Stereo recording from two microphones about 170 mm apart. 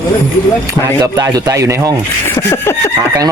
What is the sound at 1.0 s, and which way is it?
Speech, 25° right (ahead or behind).